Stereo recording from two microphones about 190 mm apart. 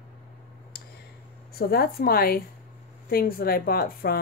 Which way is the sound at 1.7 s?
55° left (ahead or behind).